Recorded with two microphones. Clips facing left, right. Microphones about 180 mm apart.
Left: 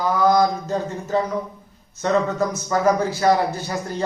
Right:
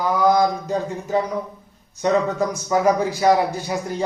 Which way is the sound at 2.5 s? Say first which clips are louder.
Right 1 dB; 15° right (ahead or behind).